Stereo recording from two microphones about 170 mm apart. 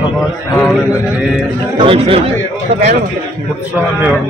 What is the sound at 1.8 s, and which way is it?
Speech, 35° right (ahead or behind).